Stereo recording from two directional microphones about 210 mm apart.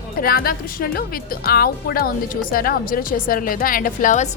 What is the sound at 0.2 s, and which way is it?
A woman's voice, 45° left (ahead or behind).